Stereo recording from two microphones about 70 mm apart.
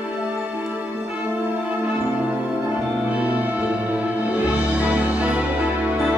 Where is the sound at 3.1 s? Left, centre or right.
Right.